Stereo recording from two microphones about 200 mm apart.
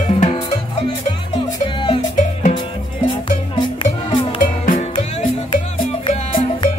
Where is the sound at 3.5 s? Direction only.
25° left (ahead or behind).